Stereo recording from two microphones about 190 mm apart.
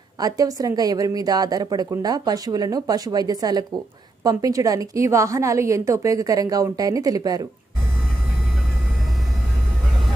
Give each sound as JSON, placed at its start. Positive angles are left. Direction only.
{"t": 0.2, "sound": "a woman's voice", "side_deg": -20}